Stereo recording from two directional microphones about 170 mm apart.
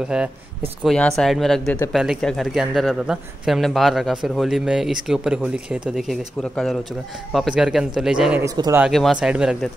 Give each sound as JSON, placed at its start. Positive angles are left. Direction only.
{"t": 0.0, "sound": "a man's voice", "side_deg": -5}
{"t": 8.5, "sound": "speech", "side_deg": -20}
{"t": 8.8, "sound": "a man's voice", "side_deg": 0}